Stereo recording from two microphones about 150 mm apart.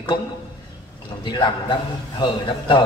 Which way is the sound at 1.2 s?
30° left (ahead or behind).